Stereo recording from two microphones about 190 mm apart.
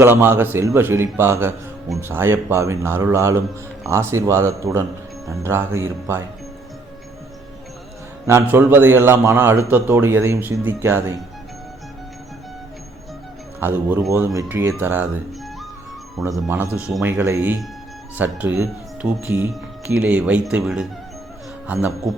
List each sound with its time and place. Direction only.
0.0 s a man's voice: 10° right (ahead or behind)
8.3 s a man's voice: 10° right (ahead or behind)
13.6 s a man's voice: 10° right (ahead or behind)
16.5 s a man's voice: 10° right (ahead or behind)